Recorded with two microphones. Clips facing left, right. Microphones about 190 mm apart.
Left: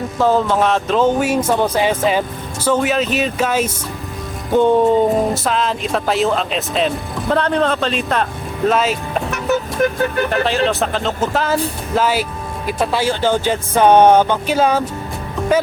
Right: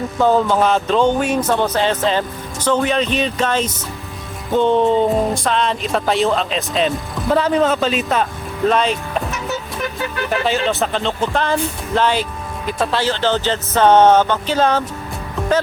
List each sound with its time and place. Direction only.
0.2 s speech: centre (ahead or behind)
9.8 s vehicle: 50° left (ahead or behind)
10.2 s speech: centre (ahead or behind)